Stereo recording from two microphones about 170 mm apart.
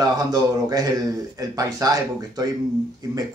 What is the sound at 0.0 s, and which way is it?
Speech, 20° right (ahead or behind).